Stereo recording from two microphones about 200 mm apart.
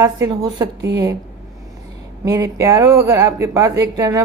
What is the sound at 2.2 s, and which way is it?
Speech, 15° right (ahead or behind).